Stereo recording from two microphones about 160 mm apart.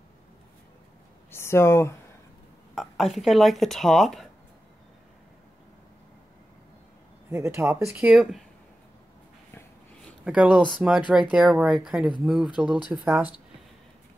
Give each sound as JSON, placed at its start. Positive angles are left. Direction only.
{"t": 1.3, "sound": "speech", "side_deg": 15}
{"t": 2.7, "sound": "speech", "side_deg": 0}
{"t": 7.2, "sound": "speech", "side_deg": -15}
{"t": 10.2, "sound": "speech", "side_deg": -5}